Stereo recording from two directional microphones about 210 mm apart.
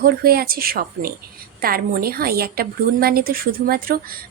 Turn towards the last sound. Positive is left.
turn(degrees=-45)  # may be behind; listen again after turning